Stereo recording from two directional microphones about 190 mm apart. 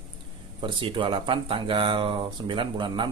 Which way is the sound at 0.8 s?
25° right (ahead or behind).